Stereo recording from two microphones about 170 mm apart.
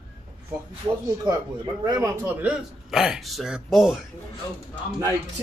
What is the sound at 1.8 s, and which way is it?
A man's voice, 20° right (ahead or behind).